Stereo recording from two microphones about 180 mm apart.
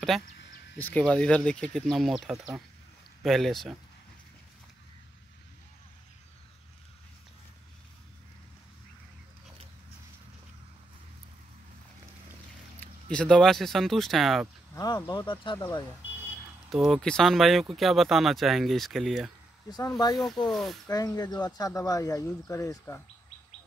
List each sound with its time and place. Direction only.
0.7 s speech: 10° left (ahead or behind)
12.8 s speech: 5° left (ahead or behind)
14.8 s speech: 20° left (ahead or behind)
16.7 s speech: centre (ahead or behind)
20.9 s speech: 20° left (ahead or behind)